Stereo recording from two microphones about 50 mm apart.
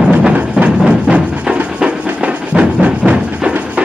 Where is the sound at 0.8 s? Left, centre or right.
Right.